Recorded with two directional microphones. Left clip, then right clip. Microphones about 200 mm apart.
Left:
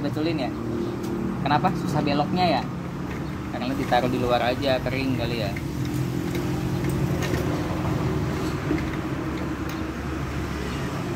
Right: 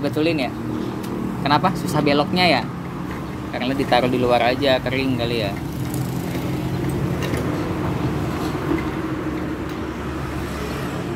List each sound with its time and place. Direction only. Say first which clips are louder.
0.2 s speech: right 6 dB; 20° right (ahead or behind)
3.6 s speech: right 5 dB; 20° right (ahead or behind)